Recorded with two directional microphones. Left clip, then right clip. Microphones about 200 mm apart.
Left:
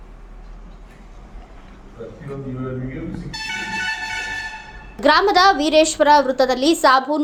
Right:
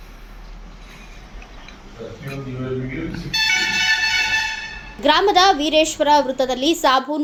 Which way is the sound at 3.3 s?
60° left (ahead or behind).